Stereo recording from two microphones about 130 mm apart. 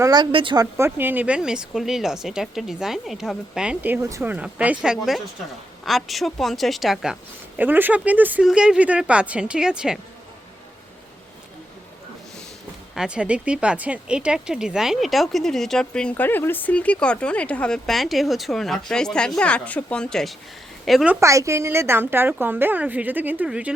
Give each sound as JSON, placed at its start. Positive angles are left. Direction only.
{"t": 0.0, "sound": "speech", "side_deg": -30}
{"t": 0.3, "sound": "speech", "side_deg": -45}
{"t": 0.5, "sound": "speech", "side_deg": -25}
{"t": 7.6, "sound": "speech", "side_deg": -15}
{"t": 13.0, "sound": "a woman's voice", "side_deg": -10}
{"t": 21.1, "sound": "speech", "side_deg": -20}